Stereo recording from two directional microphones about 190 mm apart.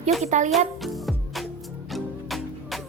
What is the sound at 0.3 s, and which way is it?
Speech, 40° right (ahead or behind).